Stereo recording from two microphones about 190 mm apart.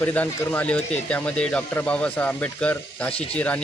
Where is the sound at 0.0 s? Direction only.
10° left (ahead or behind).